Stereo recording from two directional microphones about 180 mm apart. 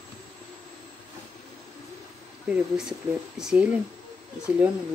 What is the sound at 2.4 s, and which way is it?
Speech, 5° right (ahead or behind).